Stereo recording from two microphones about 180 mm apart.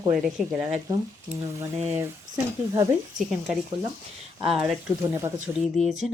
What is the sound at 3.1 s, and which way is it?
Speech, 5° right (ahead or behind).